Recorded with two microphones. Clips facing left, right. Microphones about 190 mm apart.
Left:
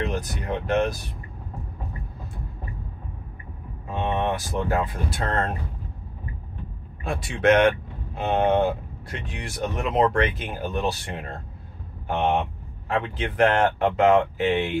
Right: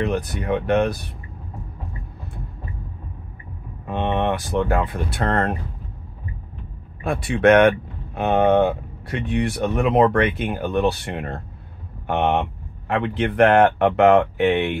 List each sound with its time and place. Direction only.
0.0 s speech: 60° right (ahead or behind)
3.9 s speech: 65° right (ahead or behind)
7.0 s speech: 60° right (ahead or behind)